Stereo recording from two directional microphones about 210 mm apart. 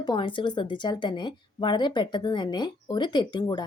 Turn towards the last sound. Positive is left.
turn(degrees=20)  # may be behind; listen again after turning